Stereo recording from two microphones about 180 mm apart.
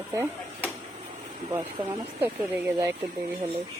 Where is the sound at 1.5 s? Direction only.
25° right (ahead or behind).